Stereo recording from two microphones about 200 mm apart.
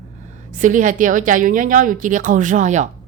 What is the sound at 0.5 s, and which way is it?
Speech, 40° right (ahead or behind).